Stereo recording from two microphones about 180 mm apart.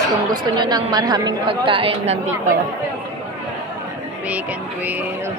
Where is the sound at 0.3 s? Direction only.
25° right (ahead or behind).